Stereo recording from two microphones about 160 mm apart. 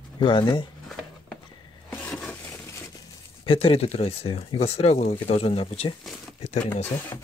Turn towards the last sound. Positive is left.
turn(degrees=45)  # may be behind; listen again after turning